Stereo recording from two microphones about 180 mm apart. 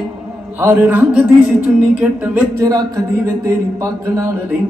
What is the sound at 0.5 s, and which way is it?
Speech, 15° right (ahead or behind).